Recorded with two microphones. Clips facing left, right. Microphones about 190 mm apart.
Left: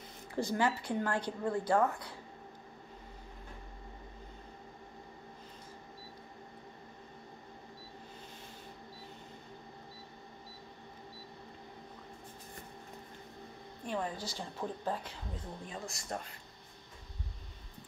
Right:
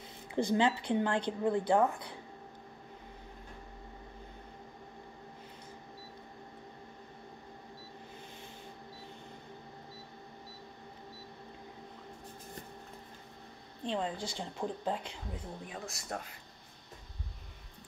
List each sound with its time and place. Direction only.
0.5 s a woman's voice: 20° right (ahead or behind)
13.8 s a woman's voice: 20° right (ahead or behind)
15.6 s speech: 5° right (ahead or behind)